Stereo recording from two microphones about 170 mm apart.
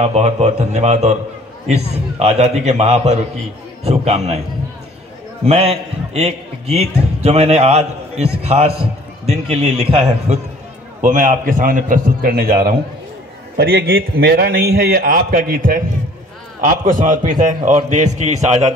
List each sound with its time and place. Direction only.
0.0 s a man's voice: 40° right (ahead or behind)
5.4 s a man's voice: 35° right (ahead or behind); by 12.7 s 60° right (ahead or behind)
13.6 s a man's voice: 70° right (ahead or behind); by 18.7 s 40° right (ahead or behind)